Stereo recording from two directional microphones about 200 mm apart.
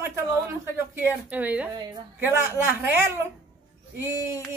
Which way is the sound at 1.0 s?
10° right (ahead or behind).